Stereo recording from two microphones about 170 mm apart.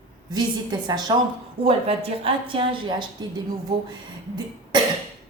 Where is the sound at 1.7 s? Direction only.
35° right (ahead or behind).